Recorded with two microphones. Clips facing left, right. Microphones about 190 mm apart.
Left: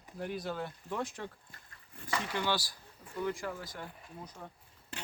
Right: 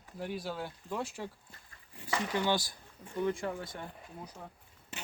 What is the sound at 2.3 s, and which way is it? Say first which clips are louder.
Speech: right 4 dB; 20° right (ahead or behind).